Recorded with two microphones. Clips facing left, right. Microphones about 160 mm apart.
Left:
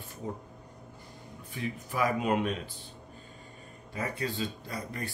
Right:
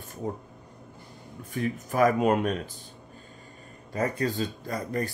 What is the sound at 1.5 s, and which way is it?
Speech, 45° right (ahead or behind).